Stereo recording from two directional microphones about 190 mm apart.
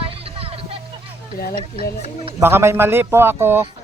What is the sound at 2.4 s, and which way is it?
A man's voice, 15° right (ahead or behind).